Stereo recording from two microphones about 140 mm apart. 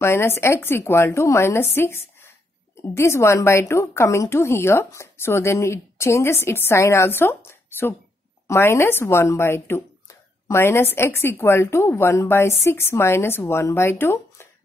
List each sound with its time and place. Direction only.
0.0 s a woman's voice: 20° left (ahead or behind)